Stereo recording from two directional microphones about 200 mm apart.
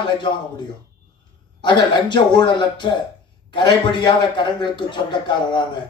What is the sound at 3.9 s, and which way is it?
Speech, 25° left (ahead or behind).